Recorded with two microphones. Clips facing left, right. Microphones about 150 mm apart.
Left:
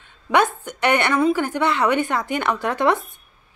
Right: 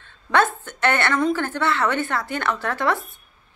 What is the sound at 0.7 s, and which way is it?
A woman's voice, 15° left (ahead or behind).